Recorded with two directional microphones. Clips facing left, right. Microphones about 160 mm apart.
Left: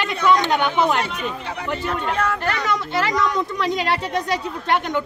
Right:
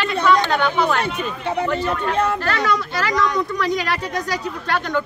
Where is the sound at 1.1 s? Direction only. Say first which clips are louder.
Right 4 dB; 30° right (ahead or behind).